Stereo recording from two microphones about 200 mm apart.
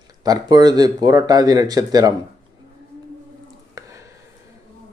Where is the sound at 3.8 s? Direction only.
15° right (ahead or behind).